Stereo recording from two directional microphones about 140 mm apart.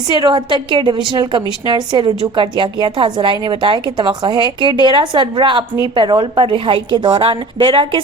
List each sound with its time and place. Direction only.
0.1 s a woman's voice: 35° right (ahead or behind)